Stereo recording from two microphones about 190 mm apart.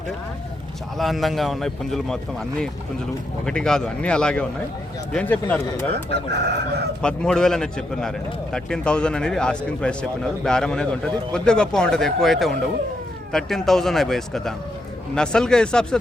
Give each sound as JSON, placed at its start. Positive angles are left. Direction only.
{"t": 0.9, "sound": "speech", "side_deg": 0}
{"t": 3.4, "sound": "speech", "side_deg": 5}
{"t": 6.1, "sound": "chicken", "side_deg": -60}
{"t": 7.0, "sound": "speech", "side_deg": 5}